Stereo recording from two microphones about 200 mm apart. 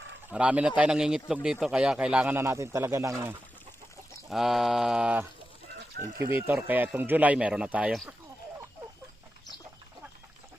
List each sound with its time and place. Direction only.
0.3 s speech: 5° right (ahead or behind)
4.3 s speech: centre (ahead or behind)